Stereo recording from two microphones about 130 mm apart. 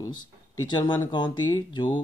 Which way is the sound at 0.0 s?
35° left (ahead or behind).